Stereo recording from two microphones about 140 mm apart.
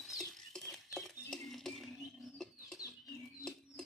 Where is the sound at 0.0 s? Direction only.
Centre (ahead or behind).